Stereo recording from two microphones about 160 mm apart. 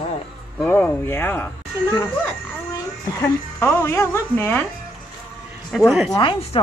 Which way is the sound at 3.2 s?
15° left (ahead or behind).